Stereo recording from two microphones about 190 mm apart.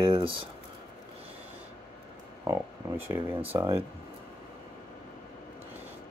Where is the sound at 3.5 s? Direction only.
15° right (ahead or behind).